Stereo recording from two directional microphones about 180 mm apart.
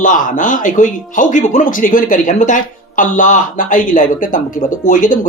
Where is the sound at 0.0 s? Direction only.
45° left (ahead or behind).